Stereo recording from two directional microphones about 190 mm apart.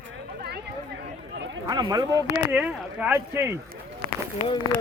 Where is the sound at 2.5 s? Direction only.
5° right (ahead or behind).